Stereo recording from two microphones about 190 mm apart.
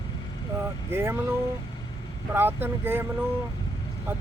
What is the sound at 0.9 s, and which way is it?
Speech, 10° right (ahead or behind).